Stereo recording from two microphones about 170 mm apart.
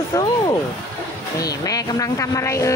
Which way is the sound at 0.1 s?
25° left (ahead or behind).